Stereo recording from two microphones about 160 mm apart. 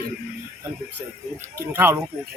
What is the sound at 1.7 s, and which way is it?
Speech, 15° right (ahead or behind).